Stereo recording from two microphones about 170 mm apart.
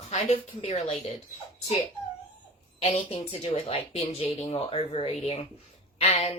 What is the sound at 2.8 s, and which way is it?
A woman's voice, 35° left (ahead or behind).